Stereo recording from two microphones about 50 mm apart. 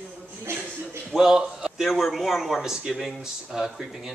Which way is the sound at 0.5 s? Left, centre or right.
Right.